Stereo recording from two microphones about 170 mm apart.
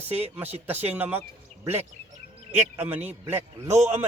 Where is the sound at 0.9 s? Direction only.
10° right (ahead or behind).